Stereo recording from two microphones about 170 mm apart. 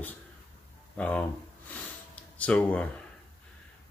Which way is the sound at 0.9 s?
10° left (ahead or behind).